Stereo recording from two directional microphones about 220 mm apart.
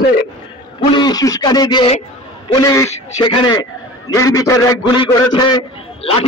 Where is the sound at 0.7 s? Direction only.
20° left (ahead or behind).